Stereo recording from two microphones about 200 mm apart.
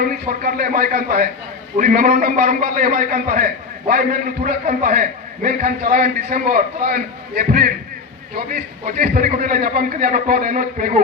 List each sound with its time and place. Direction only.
0.0 s a man's voice: 45° right (ahead or behind)